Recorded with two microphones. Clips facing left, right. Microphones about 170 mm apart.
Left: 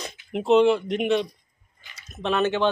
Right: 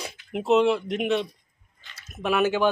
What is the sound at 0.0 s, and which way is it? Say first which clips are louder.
Speech: left 1 dB; centre (ahead or behind).